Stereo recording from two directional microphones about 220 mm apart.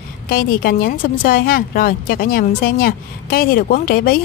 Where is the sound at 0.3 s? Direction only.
40° left (ahead or behind).